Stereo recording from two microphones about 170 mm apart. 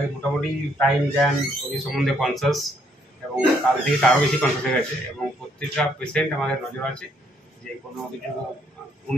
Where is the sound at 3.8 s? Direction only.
5° left (ahead or behind).